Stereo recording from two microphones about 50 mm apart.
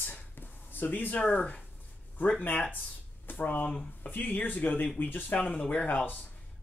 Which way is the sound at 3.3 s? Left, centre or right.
Left.